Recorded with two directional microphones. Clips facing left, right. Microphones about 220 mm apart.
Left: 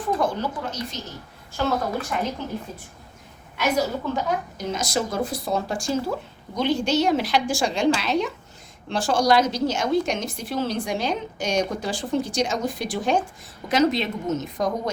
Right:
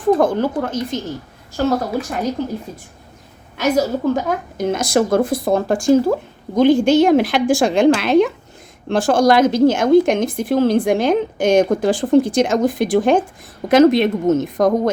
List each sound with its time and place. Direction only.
0.1 s speech: 50° right (ahead or behind)
1.5 s a woman's voice: 40° right (ahead or behind)
3.6 s a woman's voice: 45° right (ahead or behind)